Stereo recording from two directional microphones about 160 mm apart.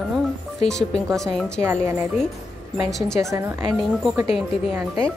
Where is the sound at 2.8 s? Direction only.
Centre (ahead or behind).